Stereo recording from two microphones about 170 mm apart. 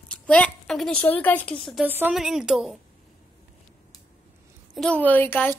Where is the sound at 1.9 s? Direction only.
10° right (ahead or behind).